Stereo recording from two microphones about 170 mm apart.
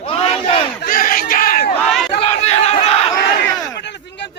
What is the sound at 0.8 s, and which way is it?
Crowd, 55° left (ahead or behind).